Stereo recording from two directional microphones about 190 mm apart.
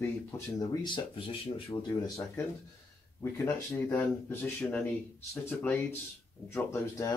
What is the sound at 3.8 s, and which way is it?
Speech, 10° left (ahead or behind).